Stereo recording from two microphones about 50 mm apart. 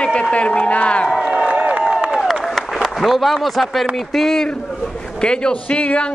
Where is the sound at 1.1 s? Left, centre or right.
Centre.